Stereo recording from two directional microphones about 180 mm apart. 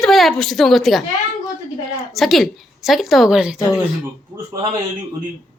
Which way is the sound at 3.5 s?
20° left (ahead or behind).